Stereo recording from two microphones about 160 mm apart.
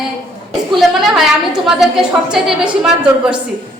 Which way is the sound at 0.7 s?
Centre (ahead or behind).